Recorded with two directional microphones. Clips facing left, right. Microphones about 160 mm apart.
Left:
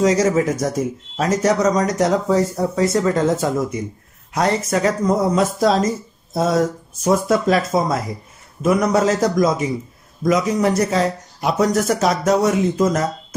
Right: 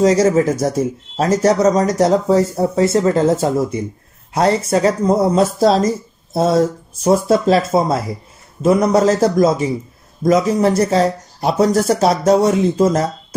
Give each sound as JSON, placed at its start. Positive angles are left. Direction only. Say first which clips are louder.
{"t": 0.0, "sound": "a man's voice", "louder": "right 3 dB", "side_deg": -30}